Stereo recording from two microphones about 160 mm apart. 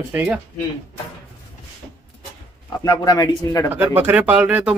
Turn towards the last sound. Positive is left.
turn(degrees=-5)  # may be behind; listen again after turning